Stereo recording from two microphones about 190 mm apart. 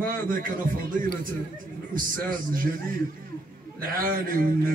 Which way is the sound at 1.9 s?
45° right (ahead or behind).